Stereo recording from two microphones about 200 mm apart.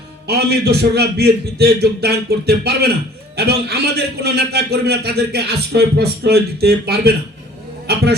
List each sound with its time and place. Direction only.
0.3 s speech: 55° right (ahead or behind)